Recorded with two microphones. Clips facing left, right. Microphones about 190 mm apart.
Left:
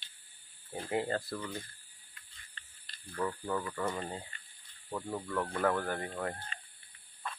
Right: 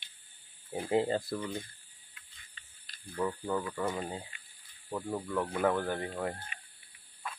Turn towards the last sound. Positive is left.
turn(degrees=-10)  # may be behind; listen again after turning